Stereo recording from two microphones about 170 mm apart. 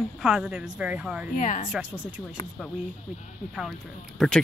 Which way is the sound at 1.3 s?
50° left (ahead or behind).